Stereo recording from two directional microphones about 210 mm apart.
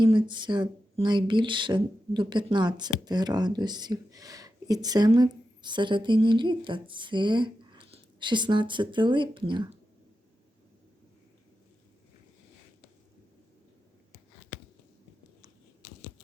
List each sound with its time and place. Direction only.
0.0 s speech: 20° right (ahead or behind)